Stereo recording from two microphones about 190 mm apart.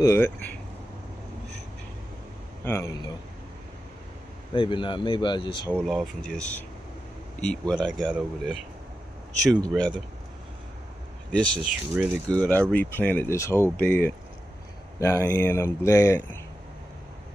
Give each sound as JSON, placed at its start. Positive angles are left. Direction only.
{"t": 0.0, "sound": "speech", "side_deg": 15}
{"t": 2.6, "sound": "speech", "side_deg": 15}
{"t": 4.6, "sound": "speech", "side_deg": 25}
{"t": 5.7, "sound": "speech", "side_deg": 0}
{"t": 11.3, "sound": "speech", "side_deg": 5}